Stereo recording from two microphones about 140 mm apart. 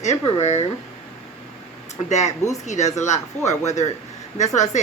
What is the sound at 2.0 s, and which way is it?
Speech, 55° left (ahead or behind).